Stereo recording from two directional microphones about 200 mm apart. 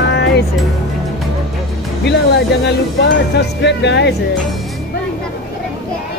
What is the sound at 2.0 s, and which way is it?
Speech, 55° left (ahead or behind).